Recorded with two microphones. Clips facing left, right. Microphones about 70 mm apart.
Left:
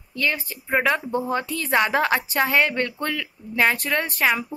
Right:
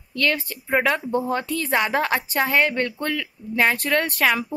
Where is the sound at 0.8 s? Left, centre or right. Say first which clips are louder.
Left 1 dB; left.